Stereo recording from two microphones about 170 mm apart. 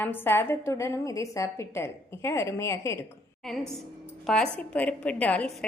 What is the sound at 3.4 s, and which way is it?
A woman's voice, 5° left (ahead or behind).